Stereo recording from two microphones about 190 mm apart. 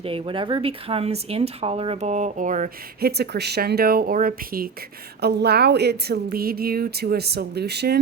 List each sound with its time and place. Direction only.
0.0 s speech: 25° right (ahead or behind); by 3.1 s 45° right (ahead or behind)
3.1 s speech: 60° right (ahead or behind)